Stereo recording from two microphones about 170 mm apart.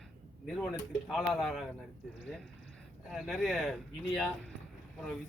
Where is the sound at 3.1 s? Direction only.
Centre (ahead or behind).